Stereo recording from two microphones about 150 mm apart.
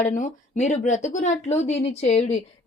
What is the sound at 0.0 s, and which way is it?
A woman's voice, 55° left (ahead or behind).